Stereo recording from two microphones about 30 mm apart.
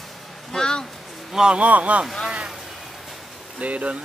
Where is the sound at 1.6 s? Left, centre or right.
Right.